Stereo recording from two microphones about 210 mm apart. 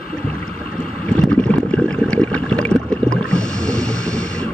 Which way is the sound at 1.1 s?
5° left (ahead or behind).